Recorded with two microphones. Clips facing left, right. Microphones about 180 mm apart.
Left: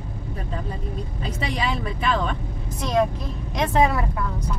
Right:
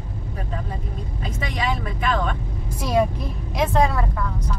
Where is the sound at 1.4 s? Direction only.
30° left (ahead or behind).